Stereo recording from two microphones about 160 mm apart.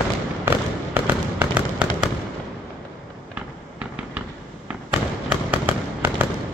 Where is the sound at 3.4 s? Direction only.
10° right (ahead or behind).